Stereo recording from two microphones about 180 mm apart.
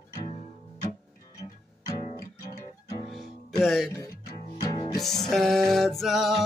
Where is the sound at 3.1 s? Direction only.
Centre (ahead or behind).